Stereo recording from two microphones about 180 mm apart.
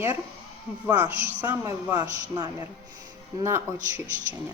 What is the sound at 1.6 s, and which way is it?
Speech, 20° right (ahead or behind).